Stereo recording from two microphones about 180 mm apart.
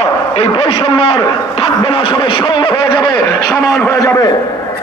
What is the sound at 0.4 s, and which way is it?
A man's voice, 30° left (ahead or behind).